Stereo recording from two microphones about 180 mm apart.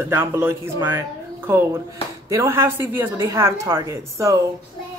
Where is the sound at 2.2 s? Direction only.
15° right (ahead or behind).